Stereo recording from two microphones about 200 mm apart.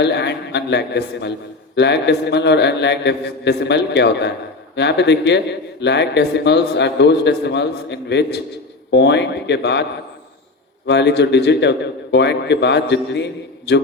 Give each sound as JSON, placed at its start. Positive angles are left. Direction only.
{"t": 0.0, "sound": "a man's voice", "side_deg": 60}
{"t": 10.8, "sound": "a man's voice", "side_deg": 60}